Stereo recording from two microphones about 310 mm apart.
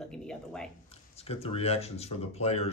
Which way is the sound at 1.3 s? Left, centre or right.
Centre.